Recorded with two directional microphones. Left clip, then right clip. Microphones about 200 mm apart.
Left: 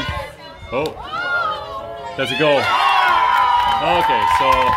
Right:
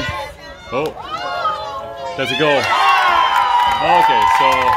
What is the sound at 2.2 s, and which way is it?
Speech, 10° right (ahead or behind).